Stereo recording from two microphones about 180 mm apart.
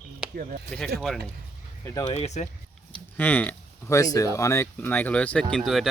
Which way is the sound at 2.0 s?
35° left (ahead or behind).